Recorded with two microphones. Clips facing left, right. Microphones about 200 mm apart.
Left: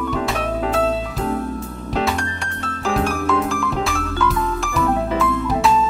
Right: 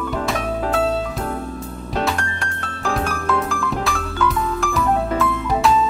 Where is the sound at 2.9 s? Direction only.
Centre (ahead or behind).